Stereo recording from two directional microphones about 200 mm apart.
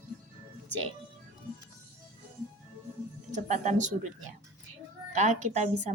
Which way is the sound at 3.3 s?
35° right (ahead or behind).